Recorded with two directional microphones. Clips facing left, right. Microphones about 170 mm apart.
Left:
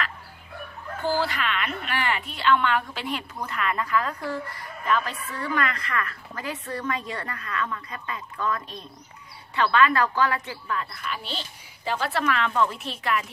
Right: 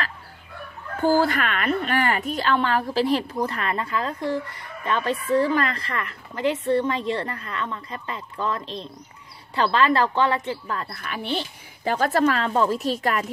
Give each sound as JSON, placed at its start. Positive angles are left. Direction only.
{"t": 1.0, "sound": "a woman's voice", "side_deg": -45}
{"t": 10.8, "sound": "a woman's voice", "side_deg": -50}